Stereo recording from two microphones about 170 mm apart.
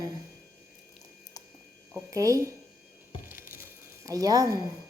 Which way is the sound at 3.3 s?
15° right (ahead or behind).